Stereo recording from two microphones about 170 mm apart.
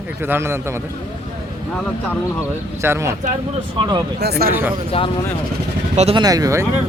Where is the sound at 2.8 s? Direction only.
15° right (ahead or behind).